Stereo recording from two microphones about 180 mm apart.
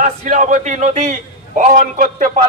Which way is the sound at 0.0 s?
45° right (ahead or behind).